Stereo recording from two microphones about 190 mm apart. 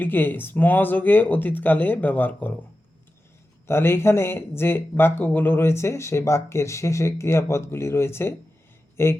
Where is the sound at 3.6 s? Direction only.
10° left (ahead or behind).